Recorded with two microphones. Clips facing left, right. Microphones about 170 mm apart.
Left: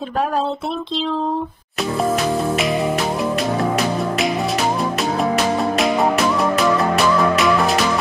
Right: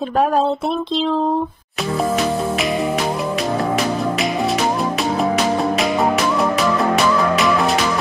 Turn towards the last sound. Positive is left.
turn(degrees=0)  # may be behind; listen again after turning